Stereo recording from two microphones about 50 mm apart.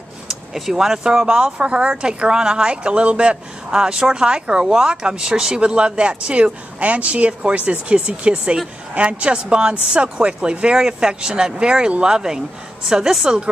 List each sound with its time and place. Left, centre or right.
0.6 s speech: centre